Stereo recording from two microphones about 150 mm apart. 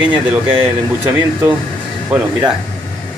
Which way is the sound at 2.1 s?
5° right (ahead or behind).